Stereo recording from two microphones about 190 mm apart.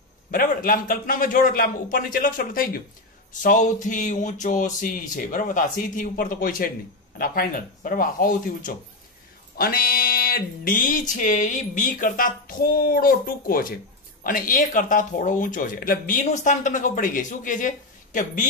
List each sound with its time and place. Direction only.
0.3 s speech: 45° left (ahead or behind)